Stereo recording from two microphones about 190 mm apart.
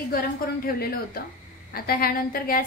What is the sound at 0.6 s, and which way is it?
A woman's voice, 50° left (ahead or behind).